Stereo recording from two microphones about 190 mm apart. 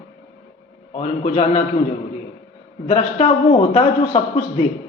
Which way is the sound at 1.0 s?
35° left (ahead or behind).